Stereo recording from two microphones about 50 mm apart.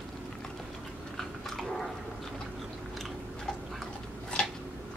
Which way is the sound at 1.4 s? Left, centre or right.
Centre.